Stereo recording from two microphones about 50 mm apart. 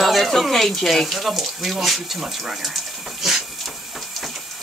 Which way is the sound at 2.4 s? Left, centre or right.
Centre.